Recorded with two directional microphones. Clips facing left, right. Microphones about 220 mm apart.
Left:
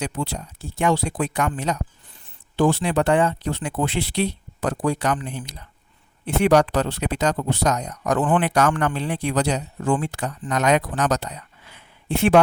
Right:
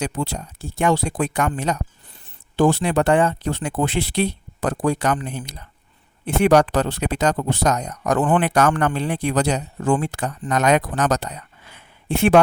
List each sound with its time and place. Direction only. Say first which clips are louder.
0.0 s speech: right 2 dB; 45° right (ahead or behind)
8.4 s speech: right 2 dB; 55° right (ahead or behind)